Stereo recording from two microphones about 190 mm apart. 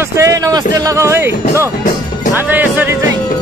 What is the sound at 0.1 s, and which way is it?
Speech, 15° right (ahead or behind).